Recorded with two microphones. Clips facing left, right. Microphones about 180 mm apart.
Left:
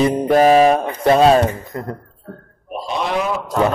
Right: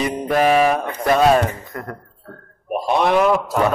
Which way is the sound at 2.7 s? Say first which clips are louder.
Right 5 dB; 55° right (ahead or behind).